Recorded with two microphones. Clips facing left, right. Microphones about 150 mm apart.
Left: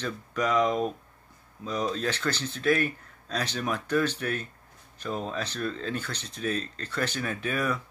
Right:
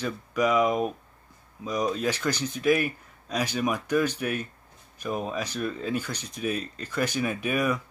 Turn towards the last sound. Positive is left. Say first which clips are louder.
# right 3 dB
turn(degrees=-15)  # may be behind; listen again after turning